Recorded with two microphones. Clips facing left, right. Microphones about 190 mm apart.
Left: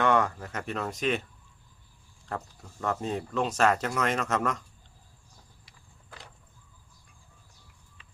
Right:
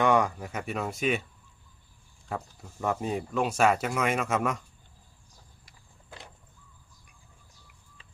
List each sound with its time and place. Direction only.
0.0 s speech: 15° right (ahead or behind)
2.3 s speech: 10° right (ahead or behind)